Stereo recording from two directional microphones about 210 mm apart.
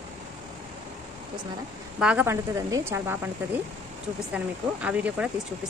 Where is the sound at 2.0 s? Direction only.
10° right (ahead or behind).